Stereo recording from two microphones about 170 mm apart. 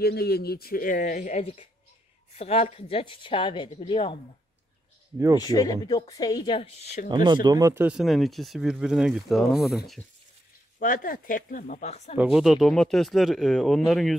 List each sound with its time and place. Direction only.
0.0 s a man's voice: 70° left (ahead or behind); by 1.4 s 45° left (ahead or behind)
1.4 s speech: 35° left (ahead or behind)
5.4 s speech: 20° left (ahead or behind); by 7.1 s 40° left (ahead or behind)
7.1 s speech: 25° right (ahead or behind); by 10.0 s centre (ahead or behind)
10.8 s speech: 55° left (ahead or behind)
12.2 s speech: 5° right (ahead or behind)